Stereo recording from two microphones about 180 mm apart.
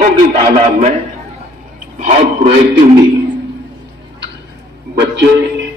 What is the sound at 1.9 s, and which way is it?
Speech, 40° right (ahead or behind).